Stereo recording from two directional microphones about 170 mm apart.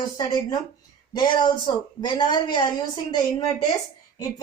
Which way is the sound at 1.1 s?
25° left (ahead or behind).